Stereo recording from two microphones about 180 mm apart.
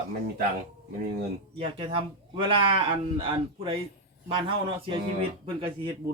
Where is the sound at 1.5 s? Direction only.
30° right (ahead or behind).